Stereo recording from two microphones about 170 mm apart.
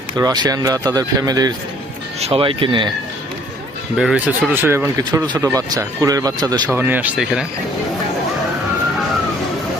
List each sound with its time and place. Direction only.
0.1 s speech: 25° right (ahead or behind)
2.2 s speech: 35° right (ahead or behind)
3.9 s speech: 5° right (ahead or behind); by 5.4 s 20° right (ahead or behind)
5.4 s speech: 10° right (ahead or behind)
6.7 s speech: 10° right (ahead or behind)